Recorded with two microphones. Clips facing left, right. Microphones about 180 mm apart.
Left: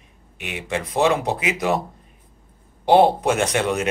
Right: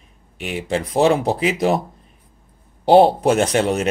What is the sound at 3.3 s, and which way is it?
Speech, 35° right (ahead or behind).